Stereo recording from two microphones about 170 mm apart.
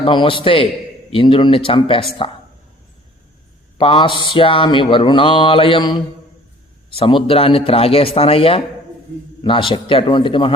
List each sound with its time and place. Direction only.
0.0 s speech: 30° left (ahead or behind)
3.8 s mantra: 30° left (ahead or behind)
6.9 s speech: 30° left (ahead or behind)
9.4 s mantra: 30° left (ahead or behind)